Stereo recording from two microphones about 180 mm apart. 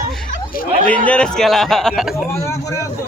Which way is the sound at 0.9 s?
5° left (ahead or behind).